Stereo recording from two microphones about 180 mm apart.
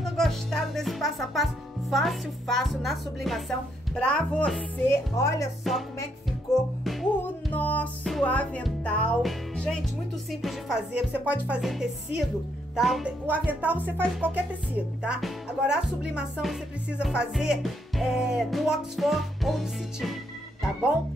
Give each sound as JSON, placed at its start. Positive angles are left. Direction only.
{"t": 0.0, "sound": "music", "side_deg": 0}
{"t": 4.8, "sound": "music", "side_deg": 15}
{"t": 5.6, "sound": "music", "side_deg": 0}
{"t": 12.7, "sound": "speech", "side_deg": 0}
{"t": 15.0, "sound": "music", "side_deg": -5}